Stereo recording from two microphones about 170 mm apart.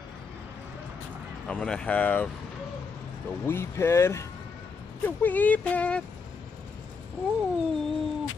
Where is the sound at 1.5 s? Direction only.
5° left (ahead or behind).